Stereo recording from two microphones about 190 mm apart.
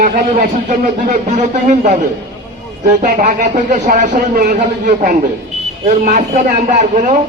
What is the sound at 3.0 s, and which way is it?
Speech, 40° right (ahead or behind).